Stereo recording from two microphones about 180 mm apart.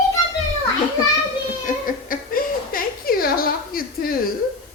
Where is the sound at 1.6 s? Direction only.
50° left (ahead or behind).